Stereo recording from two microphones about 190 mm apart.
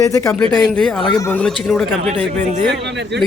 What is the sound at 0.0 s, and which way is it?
A man's voice, 15° left (ahead or behind).